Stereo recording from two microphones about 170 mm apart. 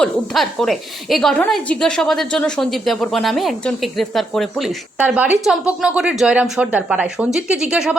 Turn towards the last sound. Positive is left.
turn(degrees=-5)  # may be behind; listen again after turning